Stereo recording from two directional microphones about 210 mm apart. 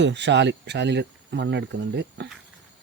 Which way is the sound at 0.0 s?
55° right (ahead or behind).